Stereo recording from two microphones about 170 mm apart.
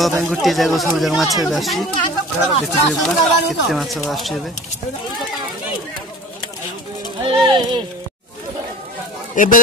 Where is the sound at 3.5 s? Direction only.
Centre (ahead or behind).